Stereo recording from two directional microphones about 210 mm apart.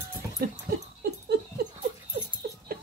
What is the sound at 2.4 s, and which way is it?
Dog, 50° right (ahead or behind).